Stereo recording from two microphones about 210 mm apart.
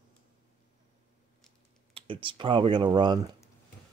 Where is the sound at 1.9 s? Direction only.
25° right (ahead or behind).